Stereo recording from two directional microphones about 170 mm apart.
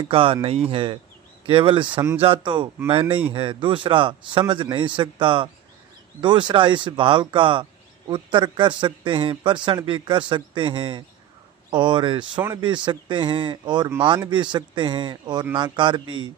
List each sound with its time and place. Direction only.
0.1 s speech: 30° right (ahead or behind)